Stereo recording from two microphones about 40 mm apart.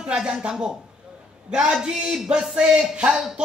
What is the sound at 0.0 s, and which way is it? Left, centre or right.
Speech, right.